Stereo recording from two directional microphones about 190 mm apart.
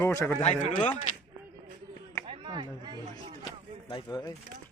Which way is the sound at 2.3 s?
25° right (ahead or behind).